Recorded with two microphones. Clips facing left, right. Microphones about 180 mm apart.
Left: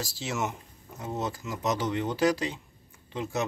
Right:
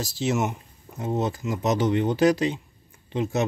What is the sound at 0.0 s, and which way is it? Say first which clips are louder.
Speech: right 7 dB; 20° right (ahead or behind).